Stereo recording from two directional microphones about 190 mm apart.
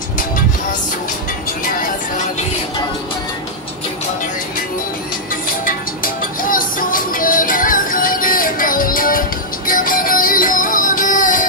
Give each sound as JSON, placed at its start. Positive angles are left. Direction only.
{"t": 5.7, "sound": "music", "side_deg": 45}